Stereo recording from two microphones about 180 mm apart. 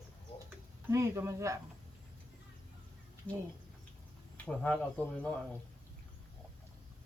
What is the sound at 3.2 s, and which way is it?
Speech, 10° right (ahead or behind).